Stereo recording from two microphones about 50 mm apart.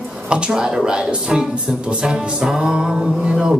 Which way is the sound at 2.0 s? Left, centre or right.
Centre.